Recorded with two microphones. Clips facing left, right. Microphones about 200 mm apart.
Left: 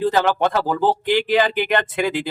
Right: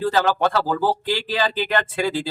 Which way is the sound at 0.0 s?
20° left (ahead or behind).